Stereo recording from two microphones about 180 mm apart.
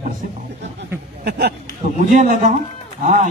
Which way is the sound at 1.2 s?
65° right (ahead or behind).